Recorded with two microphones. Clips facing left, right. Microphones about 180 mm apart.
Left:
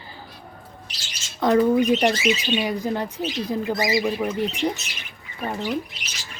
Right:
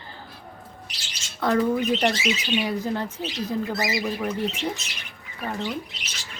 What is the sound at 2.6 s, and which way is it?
Speech, 15° left (ahead or behind).